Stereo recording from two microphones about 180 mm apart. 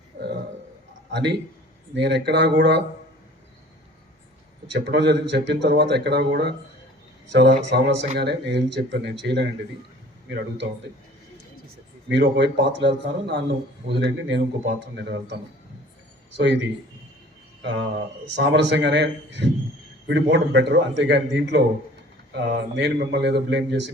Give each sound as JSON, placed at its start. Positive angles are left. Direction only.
{"t": 0.1, "sound": "a sound", "side_deg": -60}
{"t": 1.1, "sound": "speech", "side_deg": -70}
{"t": 4.7, "sound": "speech", "side_deg": -70}
{"t": 12.0, "sound": "speech", "side_deg": -75}
{"t": 17.6, "sound": "a man's voice", "side_deg": -75}